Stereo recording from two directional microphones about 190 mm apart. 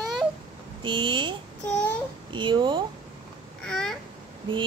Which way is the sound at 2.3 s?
25° right (ahead or behind).